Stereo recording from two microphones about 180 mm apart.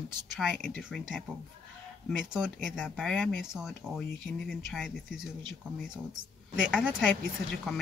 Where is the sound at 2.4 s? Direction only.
Centre (ahead or behind).